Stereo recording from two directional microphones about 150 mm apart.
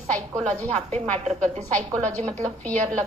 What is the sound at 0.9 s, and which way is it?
Speech, 45° right (ahead or behind).